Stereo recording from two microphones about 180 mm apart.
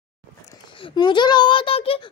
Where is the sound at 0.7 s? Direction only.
30° left (ahead or behind).